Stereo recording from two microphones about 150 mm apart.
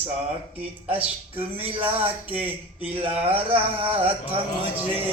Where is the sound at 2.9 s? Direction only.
40° right (ahead or behind).